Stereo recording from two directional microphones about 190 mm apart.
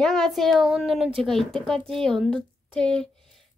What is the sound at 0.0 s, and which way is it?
Speech, centre (ahead or behind).